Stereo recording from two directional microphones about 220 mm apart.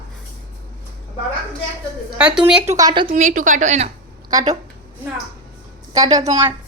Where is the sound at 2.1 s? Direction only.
5° right (ahead or behind).